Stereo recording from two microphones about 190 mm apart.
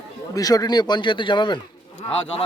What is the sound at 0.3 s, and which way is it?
A man's voice, 20° left (ahead or behind).